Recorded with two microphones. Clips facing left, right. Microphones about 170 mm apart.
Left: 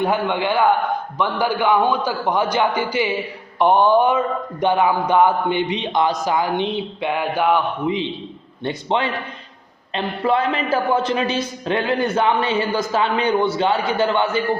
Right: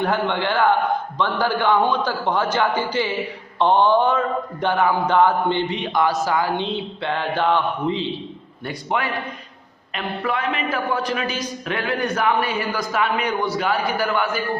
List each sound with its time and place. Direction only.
0.0 s a man's voice: 15° left (ahead or behind)
8.6 s a man's voice: 25° left (ahead or behind)